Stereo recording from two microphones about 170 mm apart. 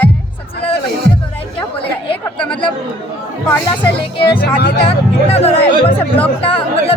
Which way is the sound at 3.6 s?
30° left (ahead or behind).